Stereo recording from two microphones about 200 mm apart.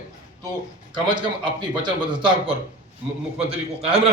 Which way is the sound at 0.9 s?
20° right (ahead or behind).